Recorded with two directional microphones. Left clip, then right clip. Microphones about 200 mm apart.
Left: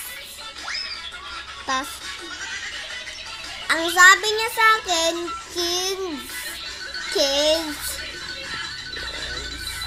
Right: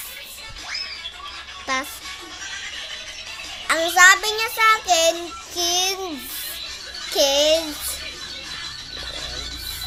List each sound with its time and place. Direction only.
3.7 s child singing: 15° right (ahead or behind)
5.5 s a child's voice: 20° right (ahead or behind)
7.2 s a child's voice: 20° right (ahead or behind)